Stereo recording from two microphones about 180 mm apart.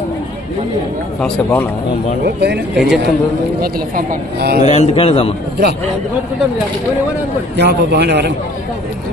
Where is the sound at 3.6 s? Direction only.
60° right (ahead or behind).